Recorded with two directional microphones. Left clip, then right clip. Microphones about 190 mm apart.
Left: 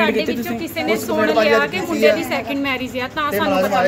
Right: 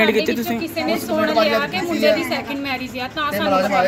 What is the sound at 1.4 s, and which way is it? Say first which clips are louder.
A woman's voice: left 3 dB; 15° left (ahead or behind).